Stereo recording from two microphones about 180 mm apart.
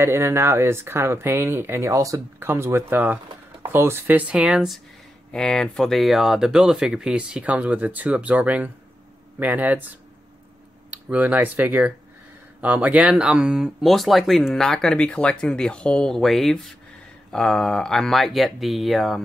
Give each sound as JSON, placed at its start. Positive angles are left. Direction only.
{"t": 0.0, "sound": "speech", "side_deg": -15}
{"t": 10.9, "sound": "speech", "side_deg": -10}